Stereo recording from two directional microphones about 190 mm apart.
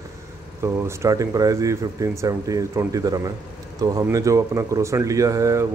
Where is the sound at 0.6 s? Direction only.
15° right (ahead or behind).